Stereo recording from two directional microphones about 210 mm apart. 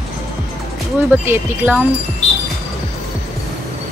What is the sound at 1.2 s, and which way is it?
Speech, 10° right (ahead or behind).